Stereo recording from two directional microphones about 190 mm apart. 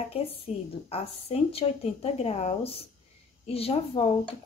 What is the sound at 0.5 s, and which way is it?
Speech, 35° left (ahead or behind).